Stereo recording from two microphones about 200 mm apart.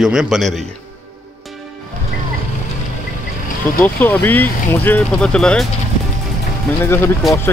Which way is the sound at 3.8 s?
10° left (ahead or behind).